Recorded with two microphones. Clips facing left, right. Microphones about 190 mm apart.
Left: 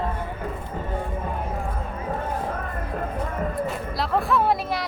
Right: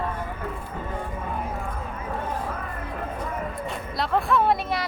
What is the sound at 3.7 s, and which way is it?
Music, centre (ahead or behind).